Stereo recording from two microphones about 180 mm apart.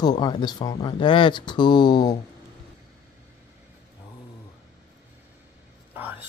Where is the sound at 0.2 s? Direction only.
25° left (ahead or behind).